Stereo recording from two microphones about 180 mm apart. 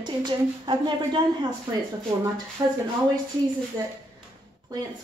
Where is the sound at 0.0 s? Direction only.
25° right (ahead or behind).